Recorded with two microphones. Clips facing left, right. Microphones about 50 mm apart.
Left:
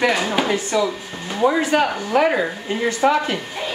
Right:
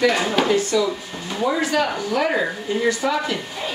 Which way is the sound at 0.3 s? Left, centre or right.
Centre.